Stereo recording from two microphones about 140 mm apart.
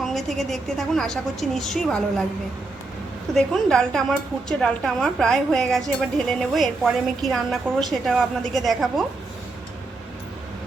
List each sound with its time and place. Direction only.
0.0 s speech: centre (ahead or behind)
3.3 s speech: 5° left (ahead or behind)